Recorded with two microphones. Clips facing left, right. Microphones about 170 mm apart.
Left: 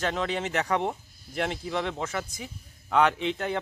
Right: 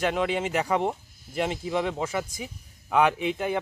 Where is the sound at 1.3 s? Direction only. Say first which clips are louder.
Right 2 dB; 20° right (ahead or behind).